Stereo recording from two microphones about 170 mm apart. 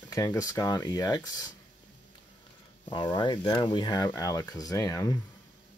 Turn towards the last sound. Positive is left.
turn(degrees=20)  # may be behind; listen again after turning